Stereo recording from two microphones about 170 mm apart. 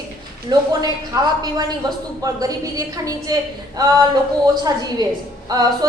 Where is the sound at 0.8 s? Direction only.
20° right (ahead or behind).